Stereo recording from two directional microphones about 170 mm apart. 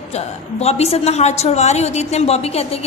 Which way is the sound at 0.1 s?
40° left (ahead or behind).